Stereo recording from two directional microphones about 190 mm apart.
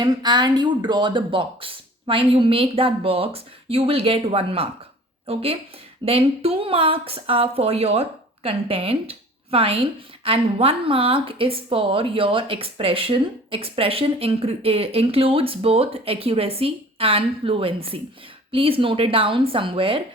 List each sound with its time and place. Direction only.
0.0 s a woman's voice: 20° right (ahead or behind)